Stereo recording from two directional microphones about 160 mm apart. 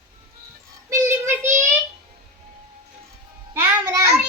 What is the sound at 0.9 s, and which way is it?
Child singing, 15° right (ahead or behind).